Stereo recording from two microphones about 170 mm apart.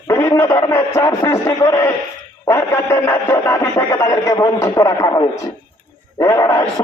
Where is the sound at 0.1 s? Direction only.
15° left (ahead or behind).